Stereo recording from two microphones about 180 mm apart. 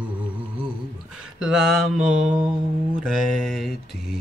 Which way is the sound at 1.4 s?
5° right (ahead or behind).